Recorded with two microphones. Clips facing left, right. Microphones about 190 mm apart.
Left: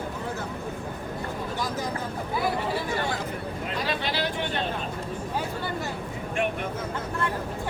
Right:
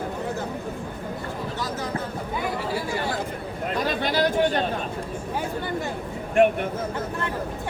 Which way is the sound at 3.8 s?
45° right (ahead or behind).